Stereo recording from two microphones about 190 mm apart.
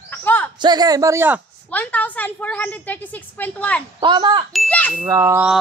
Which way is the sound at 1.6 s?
5° left (ahead or behind).